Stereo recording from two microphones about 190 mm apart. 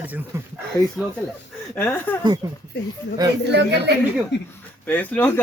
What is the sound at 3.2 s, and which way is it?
Speech, 20° right (ahead or behind).